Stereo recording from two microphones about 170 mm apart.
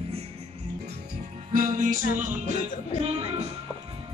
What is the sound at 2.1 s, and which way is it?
Music, 45° right (ahead or behind).